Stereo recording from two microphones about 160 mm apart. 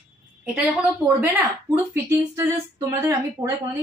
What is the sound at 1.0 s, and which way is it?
A woman's voice, 15° right (ahead or behind).